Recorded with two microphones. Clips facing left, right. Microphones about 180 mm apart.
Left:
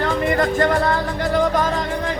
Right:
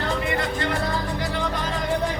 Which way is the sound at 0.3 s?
45° left (ahead or behind).